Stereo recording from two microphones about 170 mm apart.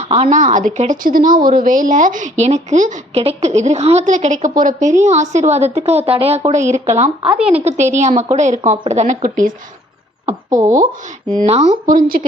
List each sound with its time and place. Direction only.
0.0 s speech: 40° right (ahead or behind)
7.3 s speech: 5° right (ahead or behind)
7.6 s speech: 40° right (ahead or behind)
11.9 s speech: 55° right (ahead or behind)